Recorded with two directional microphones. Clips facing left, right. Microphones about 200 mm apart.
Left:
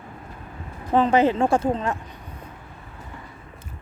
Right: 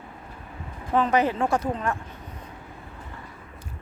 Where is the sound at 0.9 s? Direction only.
30° left (ahead or behind).